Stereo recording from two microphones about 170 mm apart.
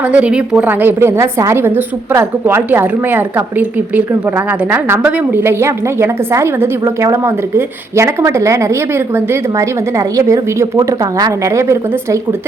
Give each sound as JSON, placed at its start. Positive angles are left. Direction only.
{"t": 0.0, "sound": "a woman's voice", "side_deg": -10}